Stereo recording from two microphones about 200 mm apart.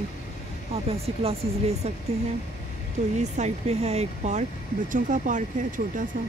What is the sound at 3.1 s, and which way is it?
Speech, 35° right (ahead or behind).